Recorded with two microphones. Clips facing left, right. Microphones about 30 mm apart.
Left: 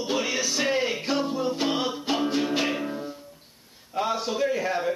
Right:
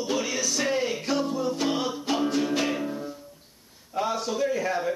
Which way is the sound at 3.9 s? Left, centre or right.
Centre.